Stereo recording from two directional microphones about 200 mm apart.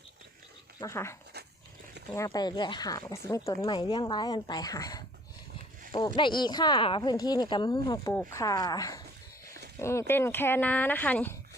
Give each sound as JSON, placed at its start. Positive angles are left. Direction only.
{"t": 0.8, "sound": "speech", "side_deg": 15}
{"t": 2.1, "sound": "speech", "side_deg": 20}